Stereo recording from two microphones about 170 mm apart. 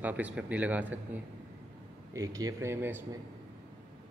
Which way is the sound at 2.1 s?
20° right (ahead or behind).